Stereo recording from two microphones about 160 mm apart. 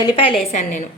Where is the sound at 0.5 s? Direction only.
50° left (ahead or behind).